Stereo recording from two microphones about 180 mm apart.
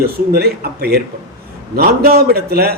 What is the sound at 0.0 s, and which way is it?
A man's voice, 60° right (ahead or behind).